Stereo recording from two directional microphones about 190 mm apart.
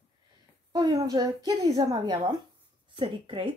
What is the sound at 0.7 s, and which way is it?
Speech, 20° right (ahead or behind).